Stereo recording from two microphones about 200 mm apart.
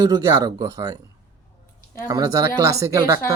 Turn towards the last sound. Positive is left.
turn(degrees=-15)  # may be behind; listen again after turning